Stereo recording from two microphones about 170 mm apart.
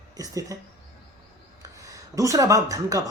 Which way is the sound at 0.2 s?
20° right (ahead or behind).